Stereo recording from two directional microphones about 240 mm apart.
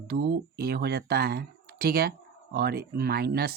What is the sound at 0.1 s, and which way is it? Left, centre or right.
Speech, right.